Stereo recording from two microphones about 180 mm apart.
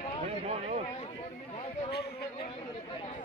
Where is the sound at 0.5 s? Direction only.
35° right (ahead or behind).